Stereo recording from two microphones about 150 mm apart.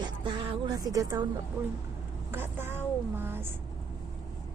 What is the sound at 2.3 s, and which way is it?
A woman's voice, 15° right (ahead or behind).